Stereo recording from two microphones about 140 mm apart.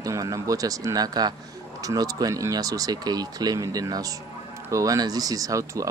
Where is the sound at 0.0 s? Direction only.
25° right (ahead or behind).